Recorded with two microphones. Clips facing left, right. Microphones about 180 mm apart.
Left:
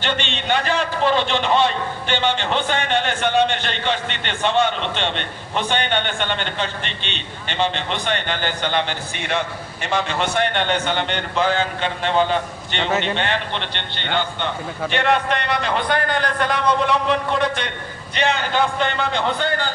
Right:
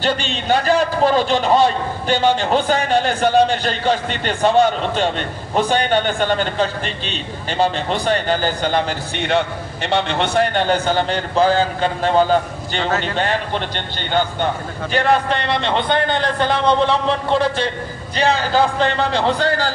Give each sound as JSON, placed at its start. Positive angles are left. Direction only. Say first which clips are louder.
{"t": 0.0, "sound": "a man's voice", "louder": "right 4 dB", "side_deg": -40}